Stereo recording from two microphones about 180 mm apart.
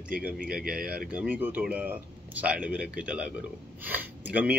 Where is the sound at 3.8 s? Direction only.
10° right (ahead or behind).